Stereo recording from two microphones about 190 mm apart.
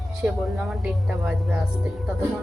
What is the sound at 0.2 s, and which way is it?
Speech, centre (ahead or behind).